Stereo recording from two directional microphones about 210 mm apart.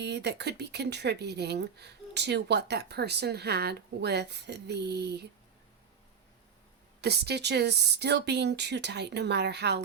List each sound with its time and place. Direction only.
0.0 s speech: 55° right (ahead or behind)
7.0 s speech: 50° right (ahead or behind)